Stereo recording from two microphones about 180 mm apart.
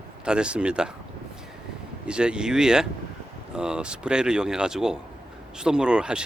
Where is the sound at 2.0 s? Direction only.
5° right (ahead or behind).